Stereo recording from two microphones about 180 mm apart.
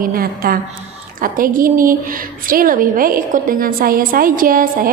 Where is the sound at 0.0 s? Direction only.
55° right (ahead or behind).